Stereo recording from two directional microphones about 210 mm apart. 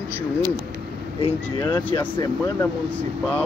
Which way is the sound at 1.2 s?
20° left (ahead or behind).